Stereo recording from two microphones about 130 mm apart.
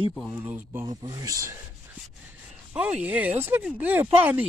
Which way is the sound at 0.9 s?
30° right (ahead or behind).